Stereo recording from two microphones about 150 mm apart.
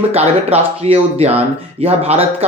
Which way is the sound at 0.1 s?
45° right (ahead or behind).